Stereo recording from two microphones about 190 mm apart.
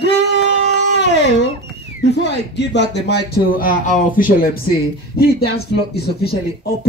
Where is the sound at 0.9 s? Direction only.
65° left (ahead or behind).